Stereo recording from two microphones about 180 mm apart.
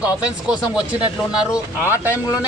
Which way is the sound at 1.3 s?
10° right (ahead or behind).